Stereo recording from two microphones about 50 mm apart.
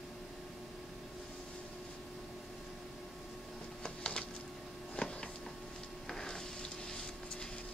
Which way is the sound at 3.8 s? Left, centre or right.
Centre.